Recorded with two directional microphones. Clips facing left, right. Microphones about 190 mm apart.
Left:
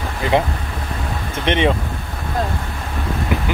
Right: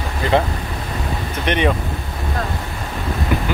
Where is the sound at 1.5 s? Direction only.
25° left (ahead or behind).